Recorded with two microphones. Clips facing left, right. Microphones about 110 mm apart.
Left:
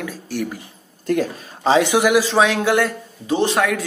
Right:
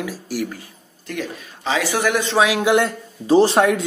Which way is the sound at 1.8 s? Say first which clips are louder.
Left 3 dB; 15° left (ahead or behind).